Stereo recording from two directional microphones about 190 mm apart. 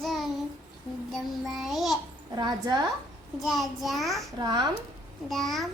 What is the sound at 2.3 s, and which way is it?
Speech, 20° right (ahead or behind).